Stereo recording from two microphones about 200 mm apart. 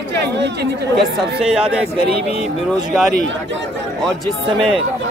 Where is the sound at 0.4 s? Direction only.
55° right (ahead or behind).